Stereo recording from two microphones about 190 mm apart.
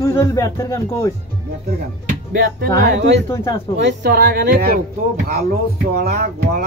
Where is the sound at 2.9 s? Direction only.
65° right (ahead or behind).